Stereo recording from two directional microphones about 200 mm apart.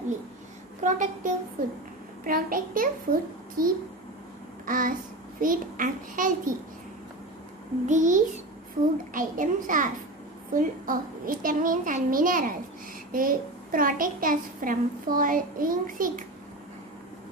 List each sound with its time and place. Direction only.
0.8 s a child's voice: 40° right (ahead or behind)
7.8 s a child's voice: 40° right (ahead or behind)